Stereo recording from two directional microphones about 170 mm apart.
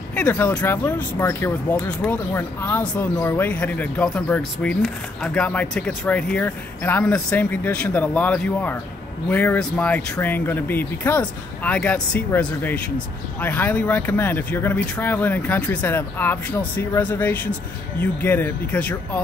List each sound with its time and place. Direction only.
0.1 s speech: 10° left (ahead or behind)